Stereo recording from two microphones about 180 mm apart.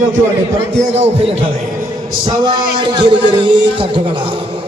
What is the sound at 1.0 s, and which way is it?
A man's voice, 35° right (ahead or behind).